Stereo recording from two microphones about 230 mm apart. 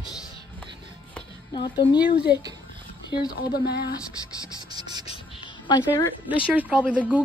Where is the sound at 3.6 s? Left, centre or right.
Left.